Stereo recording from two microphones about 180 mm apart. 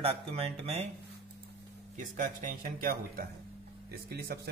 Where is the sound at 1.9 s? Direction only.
45° right (ahead or behind).